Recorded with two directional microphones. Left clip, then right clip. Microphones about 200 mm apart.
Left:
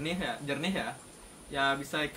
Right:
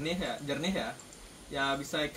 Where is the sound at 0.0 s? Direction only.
5° right (ahead or behind).